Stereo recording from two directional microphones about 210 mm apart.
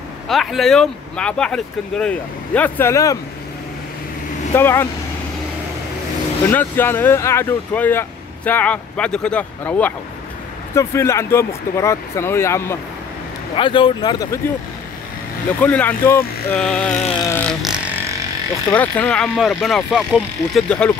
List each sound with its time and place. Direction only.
0.3 s speech: centre (ahead or behind)
4.6 s speech: 10° left (ahead or behind)
6.4 s speech: 10° left (ahead or behind)
13.6 s speech: 25° left (ahead or behind)
15.6 s speech: 5° left (ahead or behind)
17.2 s vehicle: 10° left (ahead or behind)
18.7 s speech: 5° left (ahead or behind)